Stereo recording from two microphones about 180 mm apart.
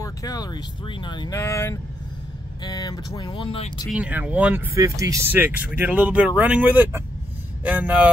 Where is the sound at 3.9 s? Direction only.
5° right (ahead or behind).